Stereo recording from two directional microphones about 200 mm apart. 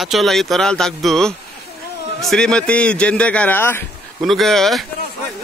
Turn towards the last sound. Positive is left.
turn(degrees=0)  # may be behind; listen again after turning